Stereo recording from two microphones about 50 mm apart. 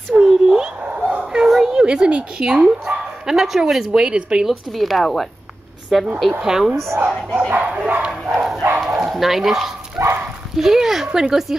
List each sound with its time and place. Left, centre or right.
0.3 s dog: centre
1.2 s a sound: centre
2.0 s speech: right
2.4 s a woman's voice: centre
3.9 s speech: centre
4.5 s a woman's voice: centre
6.4 s speech: centre
6.7 s speech: right
7.1 s a woman's voice: centre
7.5 s speech: right
8.3 s a woman's voice: centre
10.0 s speech: right
10.5 s speech: centre